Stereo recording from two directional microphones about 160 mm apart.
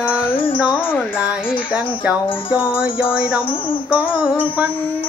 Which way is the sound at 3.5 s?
35° left (ahead or behind).